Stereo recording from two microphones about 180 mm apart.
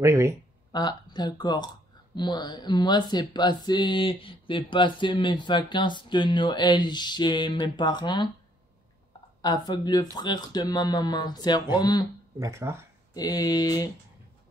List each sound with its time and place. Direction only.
0.0 s speech: 15° right (ahead or behind)
0.7 s speech: 25° left (ahead or behind)
9.4 s speech: 25° left (ahead or behind)
12.4 s speech: 15° right (ahead or behind)
13.1 s speech: 20° left (ahead or behind)